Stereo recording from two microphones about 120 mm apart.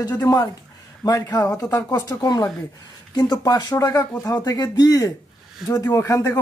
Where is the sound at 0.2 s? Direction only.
30° left (ahead or behind).